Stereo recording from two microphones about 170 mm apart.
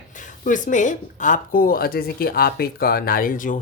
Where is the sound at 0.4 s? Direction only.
50° left (ahead or behind).